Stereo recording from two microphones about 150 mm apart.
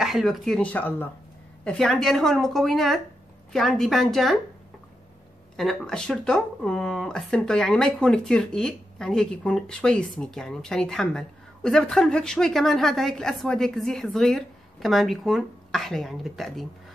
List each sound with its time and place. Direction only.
0.0 s speech: centre (ahead or behind)
5.6 s speech: centre (ahead or behind)